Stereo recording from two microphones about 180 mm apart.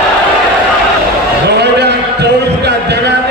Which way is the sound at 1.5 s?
70° right (ahead or behind).